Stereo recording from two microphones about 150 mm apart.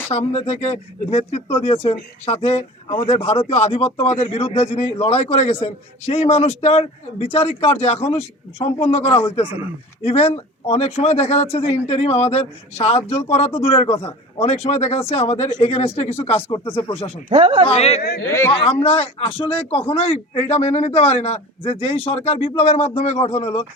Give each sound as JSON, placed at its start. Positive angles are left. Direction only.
{"t": 0.1, "sound": "speech", "side_deg": 45}
{"t": 17.2, "sound": "speech", "side_deg": -35}
{"t": 17.7, "sound": "speech", "side_deg": 45}
{"t": 18.3, "sound": "speech", "side_deg": 15}
{"t": 18.8, "sound": "speech", "side_deg": 40}
{"t": 19.3, "sound": "speech", "side_deg": 10}
{"t": 19.9, "sound": "speech", "side_deg": 40}